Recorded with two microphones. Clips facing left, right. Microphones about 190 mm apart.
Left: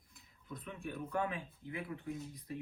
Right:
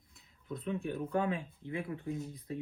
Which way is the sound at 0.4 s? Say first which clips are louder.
Right 8 dB; 25° right (ahead or behind).